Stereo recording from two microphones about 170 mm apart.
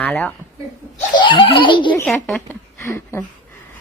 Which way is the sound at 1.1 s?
30° left (ahead or behind).